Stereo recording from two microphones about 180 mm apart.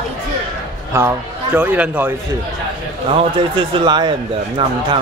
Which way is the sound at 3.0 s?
25° right (ahead or behind).